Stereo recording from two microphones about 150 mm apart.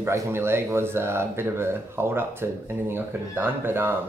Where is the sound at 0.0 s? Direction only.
15° right (ahead or behind).